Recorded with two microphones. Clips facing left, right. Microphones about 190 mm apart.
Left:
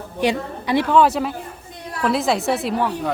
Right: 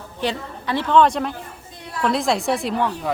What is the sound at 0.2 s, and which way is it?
Speech, 15° left (ahead or behind).